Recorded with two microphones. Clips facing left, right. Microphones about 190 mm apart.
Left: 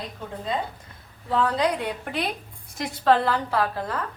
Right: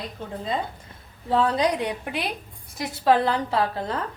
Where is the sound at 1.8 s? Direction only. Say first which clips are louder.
Even; 10° right (ahead or behind).